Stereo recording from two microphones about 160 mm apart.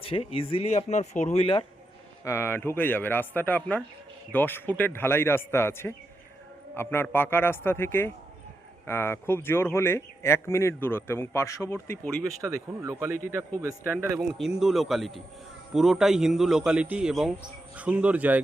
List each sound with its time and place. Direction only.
0.0 s speech: 35° left (ahead or behind)
2.2 s speech: 15° left (ahead or behind)
12.4 s speech: 20° right (ahead or behind)
13.1 s a man's voice: 55° left (ahead or behind)
13.6 s speech: 15° right (ahead or behind)
14.2 s a man's voice: centre (ahead or behind)